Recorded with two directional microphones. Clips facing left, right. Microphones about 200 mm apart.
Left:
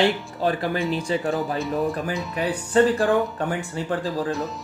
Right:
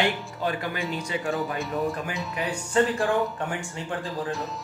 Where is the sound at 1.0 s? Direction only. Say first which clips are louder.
Left 5 dB; 30° left (ahead or behind).